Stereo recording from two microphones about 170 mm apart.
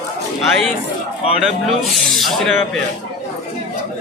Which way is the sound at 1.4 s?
Centre (ahead or behind).